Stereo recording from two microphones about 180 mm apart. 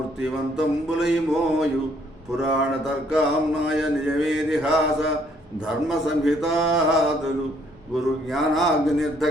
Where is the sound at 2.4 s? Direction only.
5° right (ahead or behind).